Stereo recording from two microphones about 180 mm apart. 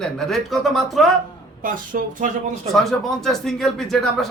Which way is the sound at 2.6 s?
Centre (ahead or behind).